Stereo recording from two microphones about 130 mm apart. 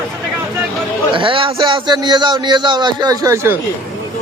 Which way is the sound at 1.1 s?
40° right (ahead or behind).